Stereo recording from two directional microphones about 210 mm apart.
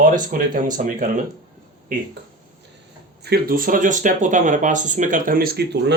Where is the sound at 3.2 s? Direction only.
45° right (ahead or behind).